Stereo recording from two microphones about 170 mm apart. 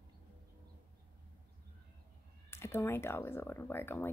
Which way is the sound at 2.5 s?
15° left (ahead or behind).